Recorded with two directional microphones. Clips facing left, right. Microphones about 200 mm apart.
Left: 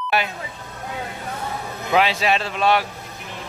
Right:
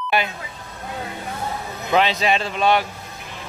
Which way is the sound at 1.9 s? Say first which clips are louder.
Even; 5° left (ahead or behind).